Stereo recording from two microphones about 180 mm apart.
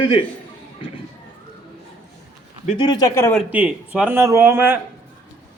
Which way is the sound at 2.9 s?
20° left (ahead or behind).